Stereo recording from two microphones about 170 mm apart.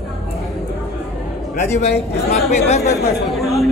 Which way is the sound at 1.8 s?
40° left (ahead or behind).